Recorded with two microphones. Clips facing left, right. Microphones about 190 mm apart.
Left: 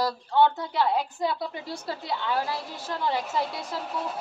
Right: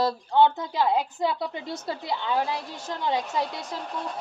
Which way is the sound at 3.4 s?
5° left (ahead or behind).